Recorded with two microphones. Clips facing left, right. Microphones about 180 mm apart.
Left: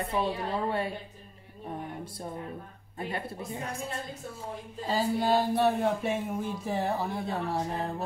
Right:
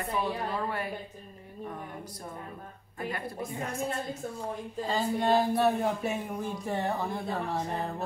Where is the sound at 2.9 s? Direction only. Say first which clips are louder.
Even; 25° left (ahead or behind).